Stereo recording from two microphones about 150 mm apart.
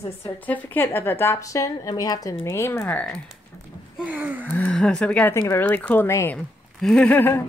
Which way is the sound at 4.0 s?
10° right (ahead or behind).